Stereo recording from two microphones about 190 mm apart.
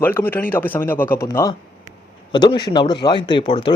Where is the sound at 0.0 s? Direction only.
10° left (ahead or behind).